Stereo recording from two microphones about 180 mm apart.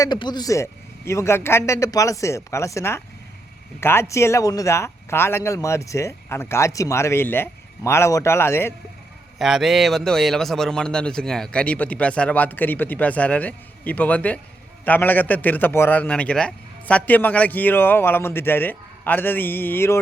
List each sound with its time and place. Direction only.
0.0 s a man's voice: 25° left (ahead or behind)
9.4 s a man's voice: centre (ahead or behind)